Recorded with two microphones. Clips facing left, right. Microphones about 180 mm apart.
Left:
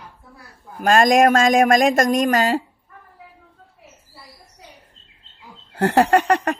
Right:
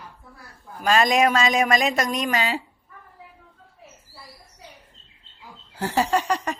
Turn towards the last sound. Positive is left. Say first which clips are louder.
# left 6 dB
turn(degrees=60)  # may be behind; listen again after turning